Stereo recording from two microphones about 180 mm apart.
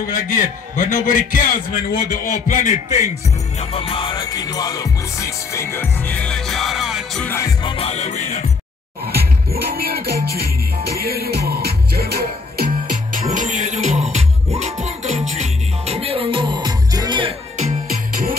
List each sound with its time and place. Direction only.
0.1 s a man's voice: 45° left (ahead or behind)
3.5 s music: 30° left (ahead or behind); by 7.2 s centre (ahead or behind)
7.2 s music: 15° left (ahead or behind)
7.7 s music: 35° left (ahead or behind)
9.0 s music: 60° right (ahead or behind); by 17.4 s 25° right (ahead or behind)
17.6 s music: 50° right (ahead or behind)